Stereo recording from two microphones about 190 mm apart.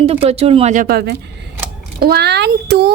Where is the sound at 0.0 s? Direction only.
30° right (ahead or behind).